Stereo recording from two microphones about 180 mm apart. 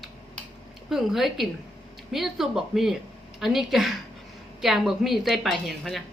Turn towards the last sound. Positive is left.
turn(degrees=0)  # may be behind; listen again after turning